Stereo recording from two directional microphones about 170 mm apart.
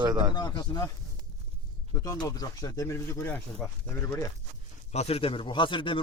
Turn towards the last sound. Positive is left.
turn(degrees=30)  # may be behind; listen again after turning